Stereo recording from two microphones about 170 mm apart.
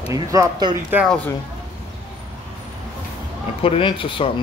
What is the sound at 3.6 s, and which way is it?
Speech, 35° left (ahead or behind).